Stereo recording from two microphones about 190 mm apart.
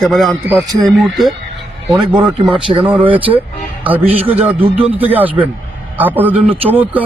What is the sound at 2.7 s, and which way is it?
Speech, 25° right (ahead or behind).